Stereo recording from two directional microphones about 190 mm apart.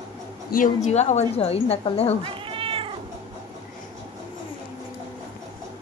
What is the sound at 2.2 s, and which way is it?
Cat, 30° right (ahead or behind).